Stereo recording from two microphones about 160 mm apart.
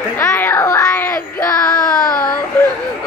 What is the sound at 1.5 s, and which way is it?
Child singing, 25° left (ahead or behind).